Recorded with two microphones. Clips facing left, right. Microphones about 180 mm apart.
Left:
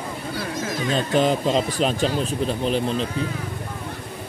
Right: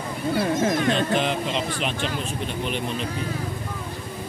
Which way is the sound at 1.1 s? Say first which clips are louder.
Left 5 dB; 40° left (ahead or behind).